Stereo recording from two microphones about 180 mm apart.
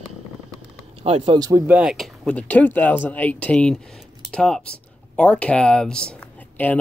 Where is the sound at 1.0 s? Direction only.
30° right (ahead or behind).